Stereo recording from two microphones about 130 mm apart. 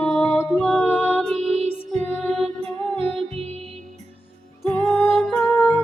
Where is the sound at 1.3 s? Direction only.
55° right (ahead or behind).